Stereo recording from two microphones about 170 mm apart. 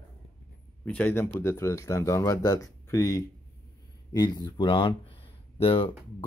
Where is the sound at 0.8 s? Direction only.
10° left (ahead or behind).